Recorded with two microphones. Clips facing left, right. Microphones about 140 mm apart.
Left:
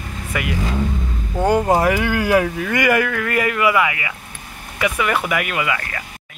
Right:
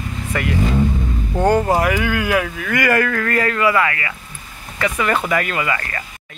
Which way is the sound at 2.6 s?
15° left (ahead or behind).